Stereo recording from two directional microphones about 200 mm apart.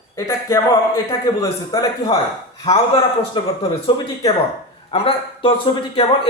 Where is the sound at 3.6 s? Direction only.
25° left (ahead or behind).